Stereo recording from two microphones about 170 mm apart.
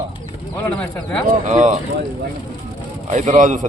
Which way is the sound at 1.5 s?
45° right (ahead or behind).